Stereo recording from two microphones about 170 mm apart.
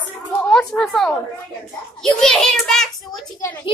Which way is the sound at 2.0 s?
Centre (ahead or behind).